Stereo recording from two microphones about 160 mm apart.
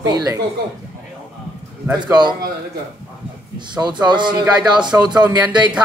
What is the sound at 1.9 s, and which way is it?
Speech, 25° right (ahead or behind).